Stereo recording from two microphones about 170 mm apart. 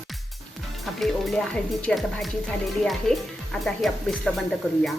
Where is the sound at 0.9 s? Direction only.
Centre (ahead or behind).